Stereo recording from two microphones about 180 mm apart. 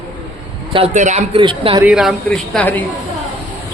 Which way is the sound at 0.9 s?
40° right (ahead or behind).